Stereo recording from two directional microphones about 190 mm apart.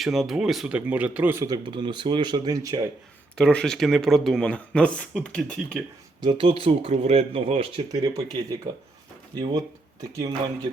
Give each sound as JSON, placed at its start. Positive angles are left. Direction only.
{"t": 0.0, "sound": "speech", "side_deg": 0}
{"t": 1.7, "sound": "speech", "side_deg": -25}
{"t": 3.3, "sound": "speech", "side_deg": 5}
{"t": 6.2, "sound": "speech", "side_deg": -25}
{"t": 8.1, "sound": "speech", "side_deg": -20}